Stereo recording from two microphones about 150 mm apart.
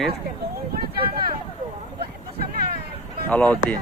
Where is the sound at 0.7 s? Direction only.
90° right.